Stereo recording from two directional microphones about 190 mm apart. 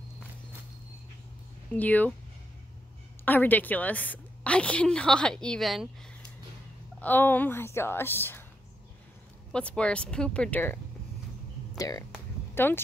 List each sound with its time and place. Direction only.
1.8 s a woman's voice: 10° left (ahead or behind)
3.3 s a woman's voice: 10° left (ahead or behind)
7.0 s a woman's voice: 10° left (ahead or behind)
9.5 s speech: 5° left (ahead or behind)